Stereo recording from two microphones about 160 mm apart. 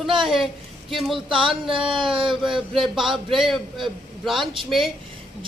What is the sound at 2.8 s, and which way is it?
A man's voice, centre (ahead or behind).